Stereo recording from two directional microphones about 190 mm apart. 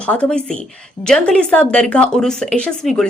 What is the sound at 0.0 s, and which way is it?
Speech, 5° left (ahead or behind).